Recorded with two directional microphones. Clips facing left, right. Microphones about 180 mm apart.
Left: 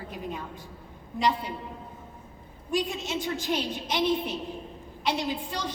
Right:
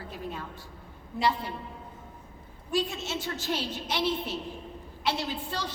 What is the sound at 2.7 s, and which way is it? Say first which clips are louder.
A woman's voice: left 1 dB; 15° left (ahead or behind).